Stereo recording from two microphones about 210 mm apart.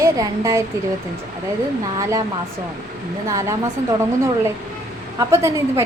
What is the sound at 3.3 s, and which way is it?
Speech, 15° right (ahead or behind).